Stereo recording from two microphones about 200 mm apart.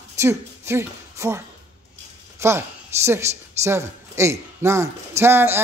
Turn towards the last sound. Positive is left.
turn(degrees=-10)  # may be behind; listen again after turning